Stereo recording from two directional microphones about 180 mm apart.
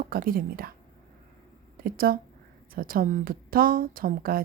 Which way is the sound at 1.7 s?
55° right (ahead or behind).